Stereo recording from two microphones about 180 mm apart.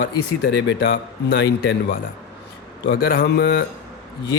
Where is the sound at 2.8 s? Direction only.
60° left (ahead or behind).